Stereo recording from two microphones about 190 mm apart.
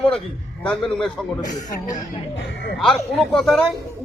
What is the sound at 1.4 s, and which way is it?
Speech, 40° left (ahead or behind).